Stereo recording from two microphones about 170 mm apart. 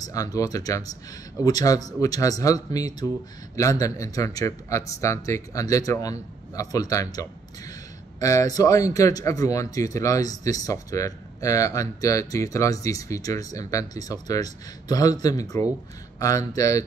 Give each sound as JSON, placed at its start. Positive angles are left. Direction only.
{"t": 0.0, "sound": "speech", "side_deg": 20}